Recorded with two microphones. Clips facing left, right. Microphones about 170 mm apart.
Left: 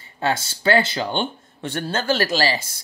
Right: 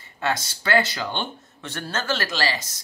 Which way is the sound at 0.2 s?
30° left (ahead or behind).